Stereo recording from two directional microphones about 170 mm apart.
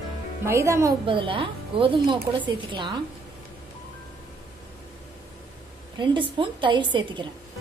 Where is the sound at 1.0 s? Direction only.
30° right (ahead or behind).